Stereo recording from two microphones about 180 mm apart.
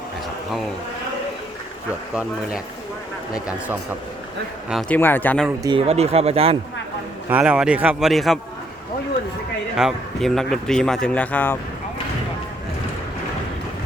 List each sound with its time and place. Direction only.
4.7 s speech: centre (ahead or behind)
5.5 s speech: 25° right (ahead or behind)
5.8 s speech: 35° right (ahead or behind)
7.3 s speech: 5° right (ahead or behind)
9.7 s speech: centre (ahead or behind)